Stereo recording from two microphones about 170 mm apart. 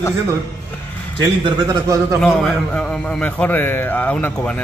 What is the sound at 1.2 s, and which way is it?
Speech, 25° right (ahead or behind).